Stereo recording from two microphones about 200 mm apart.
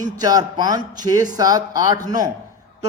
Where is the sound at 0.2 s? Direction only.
20° right (ahead or behind).